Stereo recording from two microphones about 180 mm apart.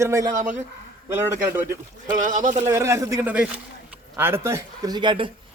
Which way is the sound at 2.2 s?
45° right (ahead or behind).